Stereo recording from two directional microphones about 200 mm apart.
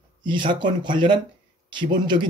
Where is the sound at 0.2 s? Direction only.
25° right (ahead or behind).